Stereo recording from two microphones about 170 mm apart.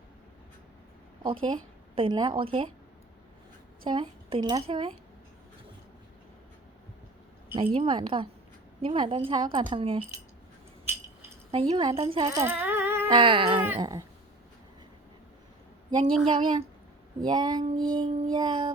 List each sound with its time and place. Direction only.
1.2 s a woman's voice: 30° right (ahead or behind)
3.8 s speech: 30° right (ahead or behind)
7.5 s a woman's voice: 30° right (ahead or behind)
11.5 s a woman's voice: 30° right (ahead or behind)
12.3 s a sound: 15° right (ahead or behind)
13.1 s a woman's voice: 30° right (ahead or behind)
15.9 s speech: 25° right (ahead or behind)